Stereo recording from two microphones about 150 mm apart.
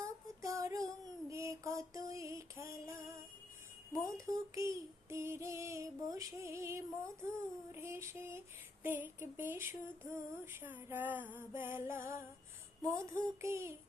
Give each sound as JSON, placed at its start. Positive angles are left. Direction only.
{"t": 0.0, "sound": "female singing", "side_deg": -20}
{"t": 1.3, "sound": "music", "side_deg": -20}
{"t": 4.3, "sound": "a sound", "side_deg": -20}
{"t": 5.0, "sound": "music", "side_deg": -15}
{"t": 7.7, "sound": "a sound", "side_deg": -15}
{"t": 12.9, "sound": "child singing", "side_deg": -20}